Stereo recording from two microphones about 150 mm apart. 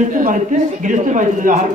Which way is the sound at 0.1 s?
60° right (ahead or behind).